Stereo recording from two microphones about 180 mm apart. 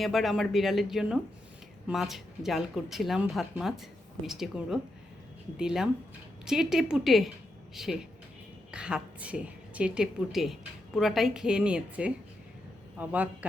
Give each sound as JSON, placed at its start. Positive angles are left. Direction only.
{"t": 0.0, "sound": "a woman's voice", "side_deg": 0}